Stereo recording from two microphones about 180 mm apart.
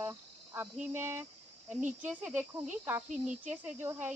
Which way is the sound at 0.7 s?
10° right (ahead or behind).